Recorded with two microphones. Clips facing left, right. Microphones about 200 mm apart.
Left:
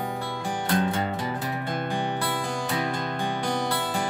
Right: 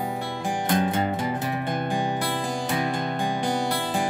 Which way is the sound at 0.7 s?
15° right (ahead or behind).